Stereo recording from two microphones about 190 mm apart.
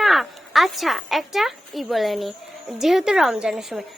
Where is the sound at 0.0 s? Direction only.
Centre (ahead or behind).